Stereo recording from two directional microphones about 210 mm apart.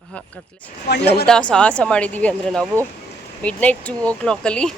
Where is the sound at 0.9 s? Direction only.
50° left (ahead or behind).